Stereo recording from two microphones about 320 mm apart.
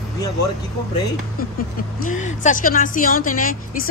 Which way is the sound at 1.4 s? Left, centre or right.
Left.